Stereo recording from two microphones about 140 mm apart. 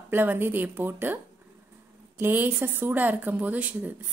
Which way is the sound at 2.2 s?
15° right (ahead or behind).